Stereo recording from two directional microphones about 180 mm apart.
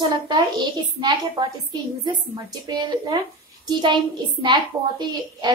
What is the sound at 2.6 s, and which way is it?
Speech, 25° right (ahead or behind).